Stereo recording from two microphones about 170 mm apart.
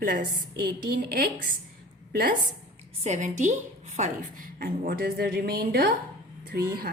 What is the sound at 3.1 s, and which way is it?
A woman's voice, 45° right (ahead or behind).